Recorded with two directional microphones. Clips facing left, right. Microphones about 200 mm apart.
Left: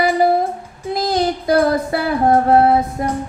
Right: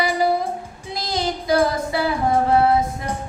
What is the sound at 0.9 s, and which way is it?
Female singing, 55° left (ahead or behind).